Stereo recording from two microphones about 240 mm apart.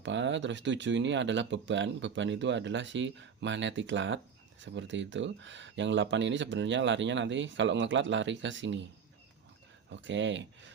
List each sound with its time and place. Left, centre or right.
0.0 s speech: right
9.9 s speech: right